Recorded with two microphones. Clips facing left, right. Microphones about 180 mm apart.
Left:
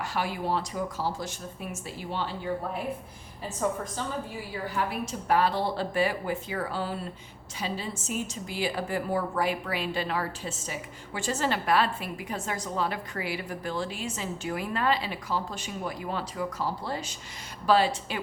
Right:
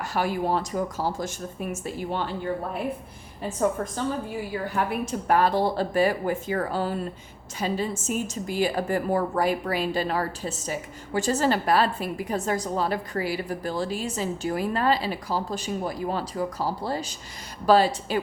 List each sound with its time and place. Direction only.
0.0 s a woman's voice: 45° right (ahead or behind)
4.7 s a woman's voice: 50° right (ahead or behind)